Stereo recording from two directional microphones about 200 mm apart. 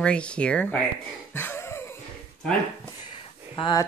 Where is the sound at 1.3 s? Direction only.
10° left (ahead or behind).